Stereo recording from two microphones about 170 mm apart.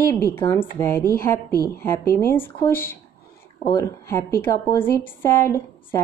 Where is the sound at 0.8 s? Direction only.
10° left (ahead or behind).